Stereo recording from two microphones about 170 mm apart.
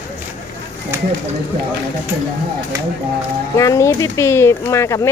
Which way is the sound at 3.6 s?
20° left (ahead or behind).